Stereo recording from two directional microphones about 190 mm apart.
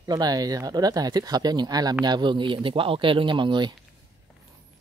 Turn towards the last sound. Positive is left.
turn(degrees=-25)  # may be behind; listen again after turning